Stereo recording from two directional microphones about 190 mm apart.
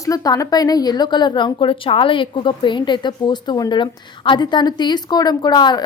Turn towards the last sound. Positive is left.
turn(degrees=20)  # may be behind; listen again after turning